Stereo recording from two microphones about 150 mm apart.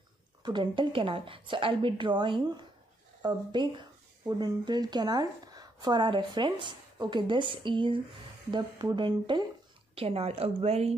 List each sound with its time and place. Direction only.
0.4 s a woman's voice: 30° right (ahead or behind)
9.9 s a woman's voice: 40° right (ahead or behind)